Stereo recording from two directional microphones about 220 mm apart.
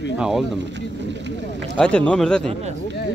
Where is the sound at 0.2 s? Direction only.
Centre (ahead or behind).